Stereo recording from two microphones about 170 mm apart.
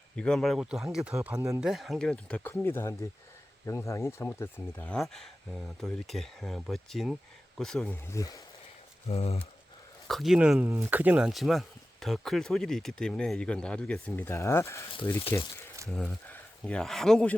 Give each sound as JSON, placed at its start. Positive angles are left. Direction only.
{"t": 0.2, "sound": "speech", "side_deg": 5}
{"t": 1.6, "sound": "speech", "side_deg": 0}
{"t": 9.0, "sound": "speech", "side_deg": 35}
{"t": 10.1, "sound": "speech", "side_deg": 0}
{"t": 15.9, "sound": "speech", "side_deg": 5}